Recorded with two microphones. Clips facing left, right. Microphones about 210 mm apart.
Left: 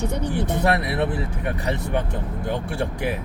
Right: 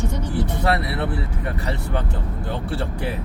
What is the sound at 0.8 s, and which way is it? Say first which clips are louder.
Speech: left 2 dB; 15° left (ahead or behind).